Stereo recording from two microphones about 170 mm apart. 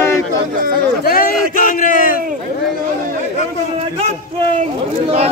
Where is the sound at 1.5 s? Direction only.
50° left (ahead or behind).